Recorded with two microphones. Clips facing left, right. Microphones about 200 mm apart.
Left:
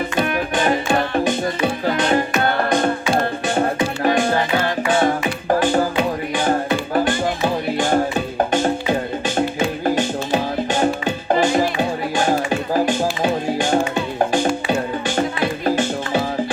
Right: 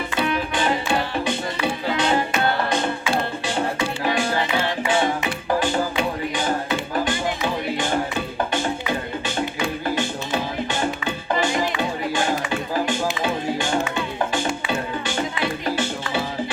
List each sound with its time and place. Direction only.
0.2 s music: 50° left (ahead or behind)